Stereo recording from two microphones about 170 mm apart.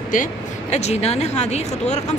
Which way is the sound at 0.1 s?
45° left (ahead or behind).